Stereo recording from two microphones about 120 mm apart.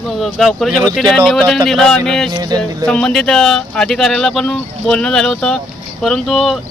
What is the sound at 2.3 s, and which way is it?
Music, 35° right (ahead or behind).